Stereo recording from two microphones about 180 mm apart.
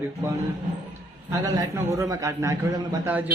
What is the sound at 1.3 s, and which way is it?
A man's voice, 15° right (ahead or behind).